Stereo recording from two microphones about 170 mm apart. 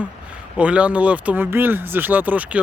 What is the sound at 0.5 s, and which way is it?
Speech, 5° right (ahead or behind).